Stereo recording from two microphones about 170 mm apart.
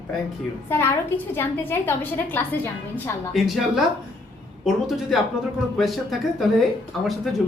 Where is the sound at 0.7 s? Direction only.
15° left (ahead or behind).